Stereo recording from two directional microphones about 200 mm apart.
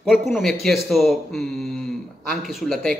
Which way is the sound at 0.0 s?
Centre (ahead or behind).